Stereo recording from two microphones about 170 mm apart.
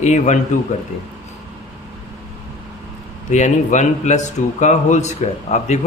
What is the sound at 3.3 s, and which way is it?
Speech, 45° left (ahead or behind).